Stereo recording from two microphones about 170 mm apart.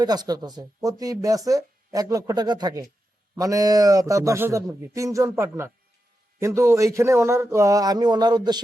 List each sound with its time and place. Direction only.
0.0 s speech: 25° right (ahead or behind)